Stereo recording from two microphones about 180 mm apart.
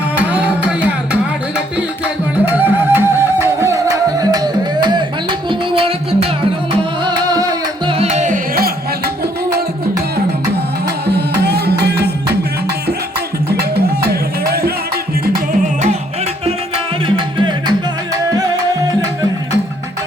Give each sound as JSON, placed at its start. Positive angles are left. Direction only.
{"t": 0.3, "sound": "music", "side_deg": -10}
{"t": 2.5, "sound": "music", "side_deg": -10}
{"t": 7.0, "sound": "music", "side_deg": -20}
{"t": 10.8, "sound": "music", "side_deg": -65}
{"t": 13.5, "sound": "music", "side_deg": -65}
{"t": 17.3, "sound": "music", "side_deg": -25}